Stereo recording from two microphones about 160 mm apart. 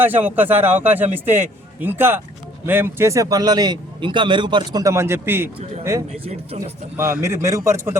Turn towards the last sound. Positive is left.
turn(degrees=-20)  # may be behind; listen again after turning